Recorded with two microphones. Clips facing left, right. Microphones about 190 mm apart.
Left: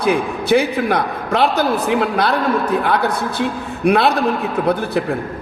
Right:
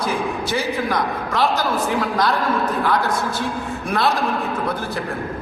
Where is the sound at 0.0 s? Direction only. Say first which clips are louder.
Left 5 dB; 60° left (ahead or behind).